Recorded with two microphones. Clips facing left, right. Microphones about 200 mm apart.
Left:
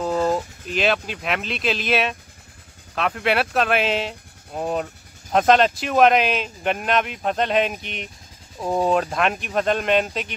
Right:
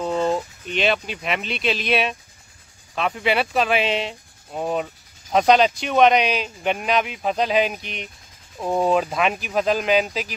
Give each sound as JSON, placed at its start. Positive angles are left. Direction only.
{"t": 0.0, "sound": "speech", "side_deg": 5}